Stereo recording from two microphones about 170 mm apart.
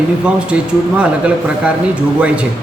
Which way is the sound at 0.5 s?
5° right (ahead or behind).